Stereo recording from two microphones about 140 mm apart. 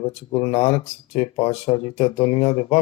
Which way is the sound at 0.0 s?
40° left (ahead or behind).